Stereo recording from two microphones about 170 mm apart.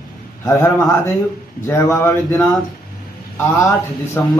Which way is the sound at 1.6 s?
15° left (ahead or behind).